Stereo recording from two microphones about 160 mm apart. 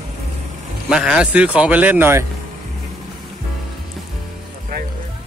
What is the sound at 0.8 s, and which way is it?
Speech, 5° right (ahead or behind).